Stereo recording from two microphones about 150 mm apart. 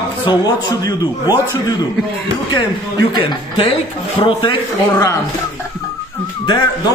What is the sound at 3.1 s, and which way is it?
A man's voice, 35° left (ahead or behind).